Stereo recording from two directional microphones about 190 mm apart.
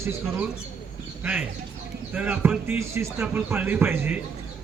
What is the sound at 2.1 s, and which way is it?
A man's voice, 10° right (ahead or behind).